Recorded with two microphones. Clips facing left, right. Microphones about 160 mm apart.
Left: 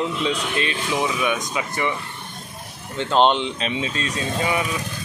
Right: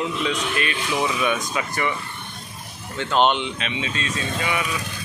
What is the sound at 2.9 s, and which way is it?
Speech, 30° left (ahead or behind).